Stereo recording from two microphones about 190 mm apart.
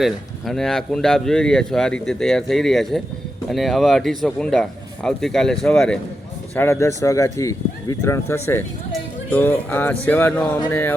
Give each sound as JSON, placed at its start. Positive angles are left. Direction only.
{"t": 0.0, "sound": "speech", "side_deg": 0}
{"t": 6.6, "sound": "speech", "side_deg": 15}